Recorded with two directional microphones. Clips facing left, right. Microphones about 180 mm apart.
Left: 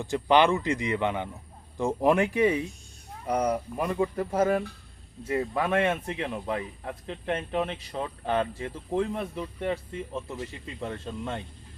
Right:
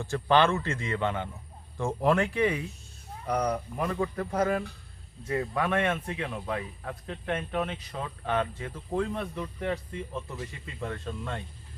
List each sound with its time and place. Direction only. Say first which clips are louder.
0.0 s speech: left 2 dB; 15° left (ahead or behind)
9.1 s speech: left 1 dB; 10° left (ahead or behind)
10.1 s speech: left 2 dB; 25° left (ahead or behind)